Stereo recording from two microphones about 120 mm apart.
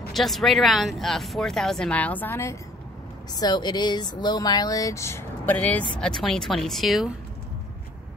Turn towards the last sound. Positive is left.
turn(degrees=0)  # may be behind; listen again after turning